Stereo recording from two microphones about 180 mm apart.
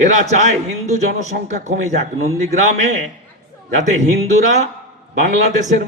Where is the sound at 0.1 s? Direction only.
40° right (ahead or behind).